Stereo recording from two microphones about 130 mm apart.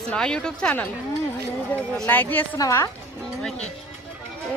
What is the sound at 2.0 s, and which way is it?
Speech, 15° left (ahead or behind).